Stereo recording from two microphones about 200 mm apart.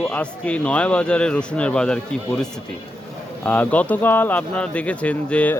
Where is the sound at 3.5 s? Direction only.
5° left (ahead or behind).